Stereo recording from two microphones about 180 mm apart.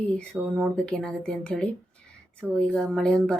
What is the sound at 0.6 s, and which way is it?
Speech, 5° left (ahead or behind).